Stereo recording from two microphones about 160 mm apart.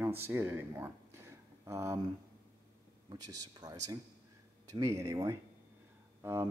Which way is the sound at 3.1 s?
25° right (ahead or behind).